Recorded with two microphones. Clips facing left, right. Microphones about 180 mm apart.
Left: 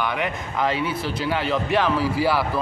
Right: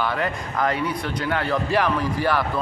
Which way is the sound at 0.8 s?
25° left (ahead or behind).